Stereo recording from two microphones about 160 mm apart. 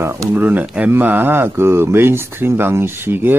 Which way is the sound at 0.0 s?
15° right (ahead or behind).